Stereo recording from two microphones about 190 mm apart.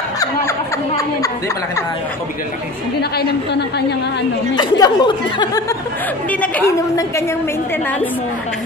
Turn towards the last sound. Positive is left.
turn(degrees=15)  # may be behind; listen again after turning